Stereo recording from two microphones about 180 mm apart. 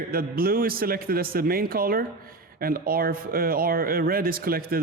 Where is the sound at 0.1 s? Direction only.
55° right (ahead or behind).